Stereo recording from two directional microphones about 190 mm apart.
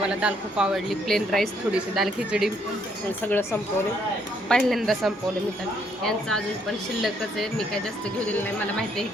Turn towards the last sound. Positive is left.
turn(degrees=0)  # may be behind; listen again after turning